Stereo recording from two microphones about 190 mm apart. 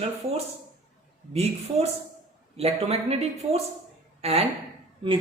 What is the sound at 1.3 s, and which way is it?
Speech, 35° right (ahead or behind).